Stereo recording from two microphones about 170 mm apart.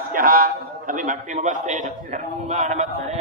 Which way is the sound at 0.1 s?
55° right (ahead or behind).